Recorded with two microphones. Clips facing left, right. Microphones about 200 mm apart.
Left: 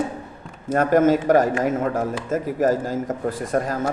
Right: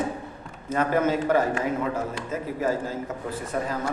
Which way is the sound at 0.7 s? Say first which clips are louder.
Left 6 dB; 45° left (ahead or behind).